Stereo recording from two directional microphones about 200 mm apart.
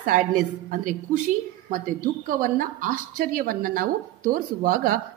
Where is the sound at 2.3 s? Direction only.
45° right (ahead or behind).